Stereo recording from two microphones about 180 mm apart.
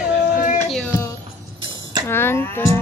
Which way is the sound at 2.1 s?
15° left (ahead or behind).